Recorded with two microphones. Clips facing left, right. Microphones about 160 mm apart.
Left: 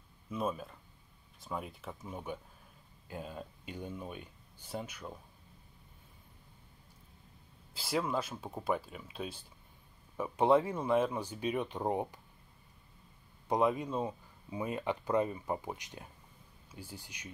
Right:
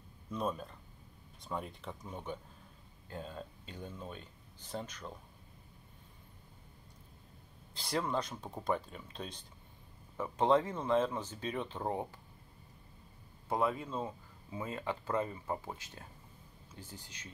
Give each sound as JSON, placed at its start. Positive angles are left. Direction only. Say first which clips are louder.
{"t": 0.3, "sound": "speech", "louder": "left 1 dB", "side_deg": 5}
{"t": 7.7, "sound": "speech", "louder": "left 1 dB", "side_deg": 5}
{"t": 13.5, "sound": "speech", "louder": "left 3 dB", "side_deg": 15}